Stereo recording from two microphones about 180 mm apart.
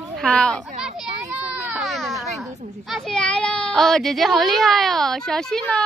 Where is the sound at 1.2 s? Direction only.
10° right (ahead or behind).